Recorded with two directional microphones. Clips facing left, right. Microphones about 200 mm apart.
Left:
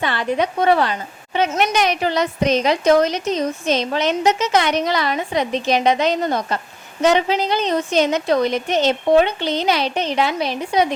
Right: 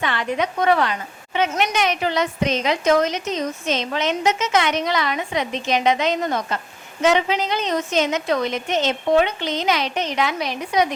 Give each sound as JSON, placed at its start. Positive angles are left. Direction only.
{"t": 0.0, "sound": "a woman's voice", "side_deg": 35}